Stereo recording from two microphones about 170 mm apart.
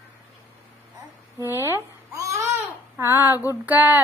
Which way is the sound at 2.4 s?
15° right (ahead or behind).